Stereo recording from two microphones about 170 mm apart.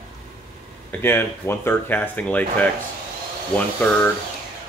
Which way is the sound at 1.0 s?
15° left (ahead or behind).